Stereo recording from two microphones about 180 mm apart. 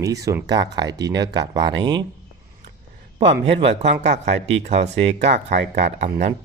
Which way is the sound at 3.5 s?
35° right (ahead or behind).